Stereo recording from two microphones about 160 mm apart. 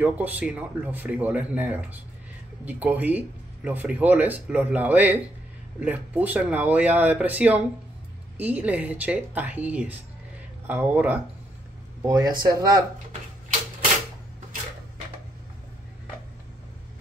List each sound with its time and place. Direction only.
0.0 s speech: 10° right (ahead or behind)